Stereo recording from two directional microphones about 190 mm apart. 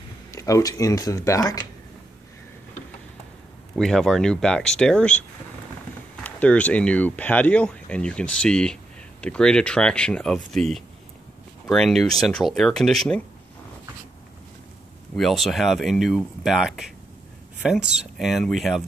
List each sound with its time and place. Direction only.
0.3 s speech: 15° left (ahead or behind)
3.7 s speech: 5° left (ahead or behind)
6.2 s speech: 5° left (ahead or behind)
15.1 s speech: centre (ahead or behind)